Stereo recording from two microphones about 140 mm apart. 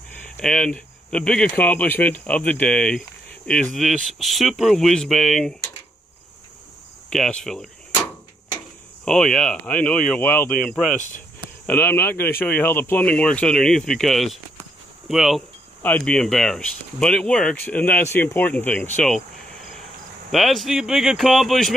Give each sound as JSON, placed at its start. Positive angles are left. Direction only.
{"t": 0.4, "sound": "speech", "side_deg": 5}
{"t": 7.1, "sound": "speech", "side_deg": 5}
{"t": 9.0, "sound": "speech", "side_deg": 5}
{"t": 10.6, "sound": "speech", "side_deg": 0}
{"t": 11.6, "sound": "speech", "side_deg": 15}
{"t": 15.8, "sound": "speech", "side_deg": 10}
{"t": 20.2, "sound": "speech", "side_deg": 0}